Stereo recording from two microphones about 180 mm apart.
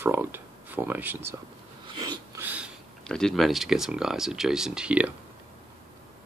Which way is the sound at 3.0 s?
5° left (ahead or behind).